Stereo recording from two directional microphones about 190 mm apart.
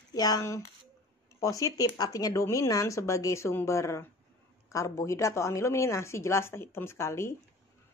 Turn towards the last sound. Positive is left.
turn(degrees=15)  # may be behind; listen again after turning